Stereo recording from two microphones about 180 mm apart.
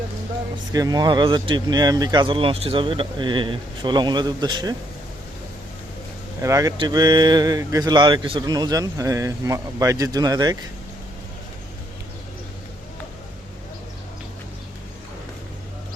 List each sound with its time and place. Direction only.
0.5 s speech: 20° right (ahead or behind)
6.4 s speech: 20° right (ahead or behind)